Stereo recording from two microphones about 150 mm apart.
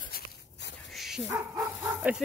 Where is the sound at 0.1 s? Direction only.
80° left.